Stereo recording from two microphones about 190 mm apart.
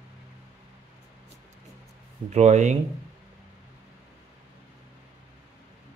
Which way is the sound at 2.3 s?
35° right (ahead or behind).